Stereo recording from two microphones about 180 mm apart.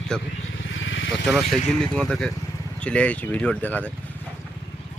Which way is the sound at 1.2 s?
Centre (ahead or behind).